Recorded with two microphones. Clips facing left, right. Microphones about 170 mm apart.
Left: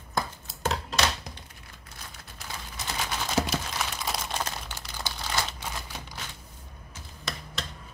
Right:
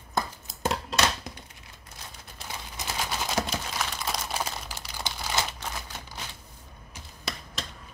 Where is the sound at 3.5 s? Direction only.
5° left (ahead or behind).